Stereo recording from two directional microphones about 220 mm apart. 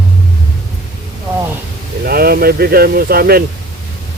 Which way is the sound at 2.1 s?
45° right (ahead or behind).